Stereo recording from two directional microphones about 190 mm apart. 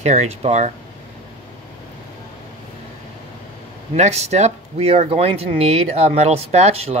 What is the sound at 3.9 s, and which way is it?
Speech, 35° right (ahead or behind).